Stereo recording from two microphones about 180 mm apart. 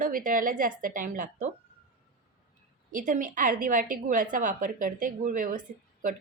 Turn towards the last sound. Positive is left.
turn(degrees=-50)  # may be behind; listen again after turning